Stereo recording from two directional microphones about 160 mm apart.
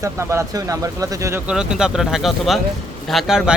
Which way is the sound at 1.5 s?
5° right (ahead or behind).